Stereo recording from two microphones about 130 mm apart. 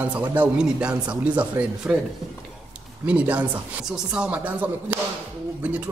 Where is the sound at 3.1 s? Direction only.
10° right (ahead or behind).